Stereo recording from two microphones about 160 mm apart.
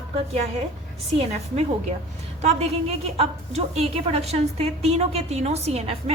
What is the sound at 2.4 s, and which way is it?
A woman's voice, 45° right (ahead or behind).